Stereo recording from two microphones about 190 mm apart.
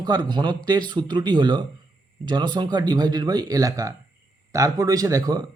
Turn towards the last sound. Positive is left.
turn(degrees=-20)  # may be behind; listen again after turning